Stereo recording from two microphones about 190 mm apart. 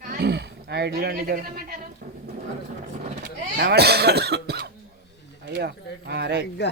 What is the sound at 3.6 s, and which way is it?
Speech, 60° right (ahead or behind).